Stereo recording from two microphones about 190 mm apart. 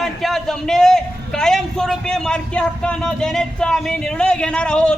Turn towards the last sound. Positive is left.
turn(degrees=5)  # may be behind; listen again after turning